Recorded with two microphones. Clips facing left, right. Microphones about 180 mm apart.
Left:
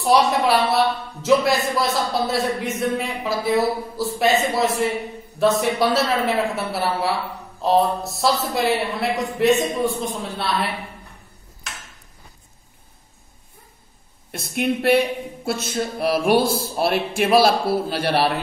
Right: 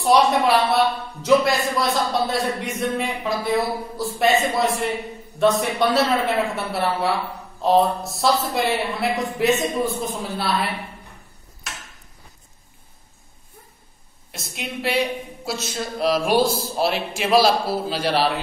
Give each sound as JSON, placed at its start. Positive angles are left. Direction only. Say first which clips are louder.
{"t": 0.0, "sound": "a man's voice", "louder": "right 1 dB", "side_deg": 0}
{"t": 14.3, "sound": "a woman's voice", "louder": "left 9 dB", "side_deg": 55}